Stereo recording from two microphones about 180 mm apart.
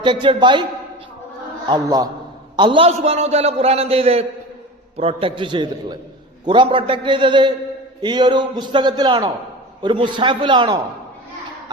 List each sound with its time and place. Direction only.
0.0 s a man's voice: 25° right (ahead or behind)
1.6 s a man's voice: 20° right (ahead or behind)